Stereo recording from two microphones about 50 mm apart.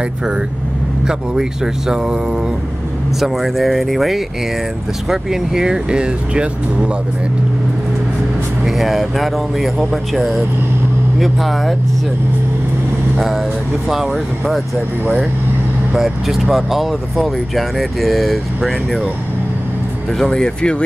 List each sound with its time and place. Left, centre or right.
1.0 s speech: centre
3.2 s speech: centre
8.6 s speech: centre
13.8 s speech: centre
15.9 s speech: centre
20.2 s speech: centre